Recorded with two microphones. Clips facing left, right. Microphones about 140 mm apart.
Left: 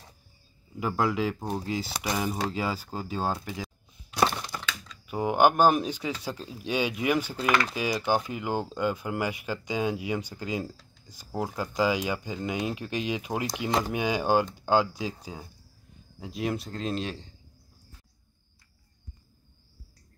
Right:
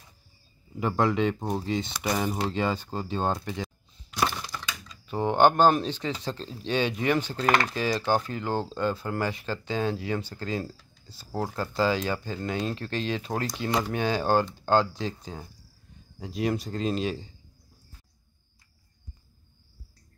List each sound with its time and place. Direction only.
0.7 s speech: 5° left (ahead or behind)
4.2 s a sound: 25° left (ahead or behind)
5.0 s speech: 10° left (ahead or behind)
7.4 s speech: 35° right (ahead or behind)
7.7 s speech: 10° left (ahead or behind)
16.2 s speech: centre (ahead or behind)